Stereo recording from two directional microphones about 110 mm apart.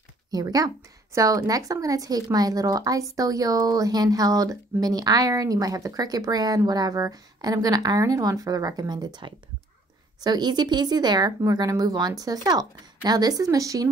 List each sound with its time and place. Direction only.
0.3 s speech: 35° right (ahead or behind)